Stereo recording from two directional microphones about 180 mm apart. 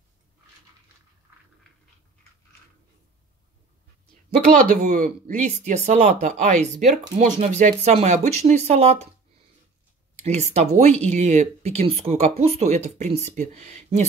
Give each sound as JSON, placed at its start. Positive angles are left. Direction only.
{"t": 4.6, "sound": "speech", "side_deg": -50}
{"t": 10.2, "sound": "speech", "side_deg": -35}